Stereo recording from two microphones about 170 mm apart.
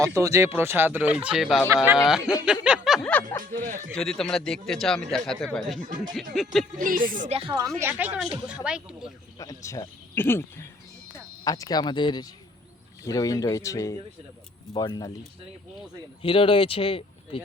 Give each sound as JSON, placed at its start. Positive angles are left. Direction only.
{"t": 0.0, "sound": "speech", "side_deg": -20}
{"t": 1.6, "sound": "speech", "side_deg": -15}
{"t": 2.0, "sound": "a man's voice", "side_deg": 0}
{"t": 2.6, "sound": "snicker", "side_deg": -5}
{"t": 3.6, "sound": "speech", "side_deg": -50}
{"t": 3.9, "sound": "a man's voice", "side_deg": 5}
{"t": 6.7, "sound": "speech", "side_deg": -55}
{"t": 7.3, "sound": "speech", "side_deg": -35}
{"t": 7.8, "sound": "a man's voice", "side_deg": -10}
{"t": 9.4, "sound": "speech", "side_deg": 20}
{"t": 11.4, "sound": "speech", "side_deg": 20}
{"t": 16.2, "sound": "speech", "side_deg": 30}